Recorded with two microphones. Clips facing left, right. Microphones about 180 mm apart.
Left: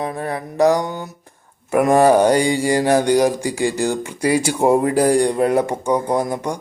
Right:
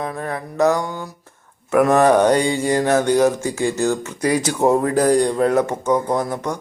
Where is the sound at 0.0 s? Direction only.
15° left (ahead or behind).